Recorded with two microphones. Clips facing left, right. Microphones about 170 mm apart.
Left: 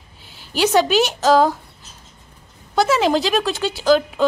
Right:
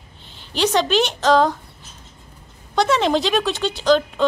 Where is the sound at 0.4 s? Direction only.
5° left (ahead or behind).